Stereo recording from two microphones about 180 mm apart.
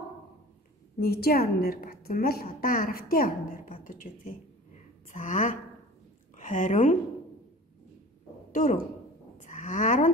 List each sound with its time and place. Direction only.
0.9 s a woman's voice: 60° left (ahead or behind)
8.5 s speech: 50° left (ahead or behind)
9.4 s a sound: 45° left (ahead or behind)